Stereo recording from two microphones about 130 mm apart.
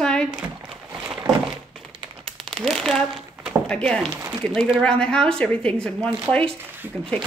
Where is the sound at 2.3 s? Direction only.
5° left (ahead or behind).